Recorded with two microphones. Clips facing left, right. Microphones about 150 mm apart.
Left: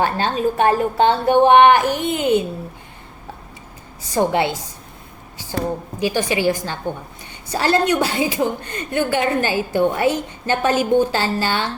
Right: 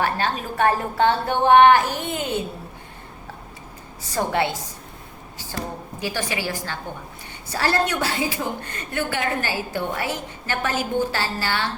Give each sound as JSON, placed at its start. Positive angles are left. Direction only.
{"t": 0.0, "sound": "a woman's voice", "side_deg": 20}
{"t": 4.1, "sound": "a woman's voice", "side_deg": 20}
{"t": 6.0, "sound": "a woman's voice", "side_deg": 20}